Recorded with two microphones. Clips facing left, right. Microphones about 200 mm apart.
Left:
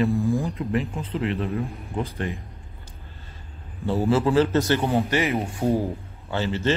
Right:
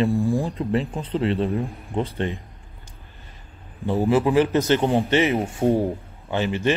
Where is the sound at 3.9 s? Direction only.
15° right (ahead or behind).